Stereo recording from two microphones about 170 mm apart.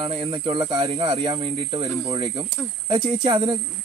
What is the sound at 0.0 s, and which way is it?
Speech, 30° right (ahead or behind).